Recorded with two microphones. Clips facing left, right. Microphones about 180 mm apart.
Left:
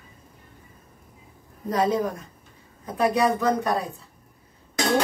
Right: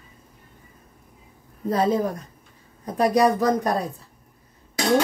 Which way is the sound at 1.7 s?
35° right (ahead or behind).